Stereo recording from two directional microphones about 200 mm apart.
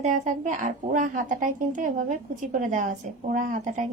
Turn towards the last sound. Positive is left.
turn(degrees=-40)  # may be behind; listen again after turning